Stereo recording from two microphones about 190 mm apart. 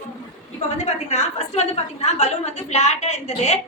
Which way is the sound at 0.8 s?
35° left (ahead or behind).